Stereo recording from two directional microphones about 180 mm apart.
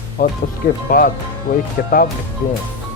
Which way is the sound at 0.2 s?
55° left (ahead or behind).